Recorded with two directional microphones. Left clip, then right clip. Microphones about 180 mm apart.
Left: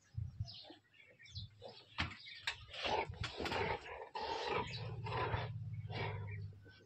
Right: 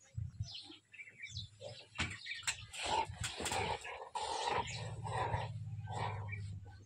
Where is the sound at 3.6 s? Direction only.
15° left (ahead or behind).